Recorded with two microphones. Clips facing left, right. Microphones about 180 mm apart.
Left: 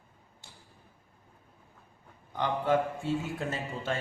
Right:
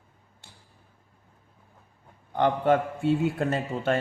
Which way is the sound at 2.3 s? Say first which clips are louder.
Right 5 dB; 60° right (ahead or behind).